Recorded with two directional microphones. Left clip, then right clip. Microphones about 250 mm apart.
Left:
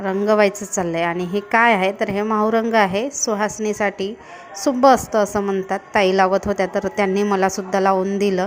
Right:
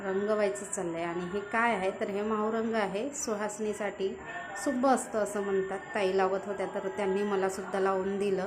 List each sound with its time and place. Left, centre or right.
0.0 s a woman's voice: left